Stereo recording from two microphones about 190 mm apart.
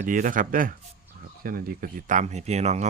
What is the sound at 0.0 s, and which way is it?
Speech, 45° right (ahead or behind).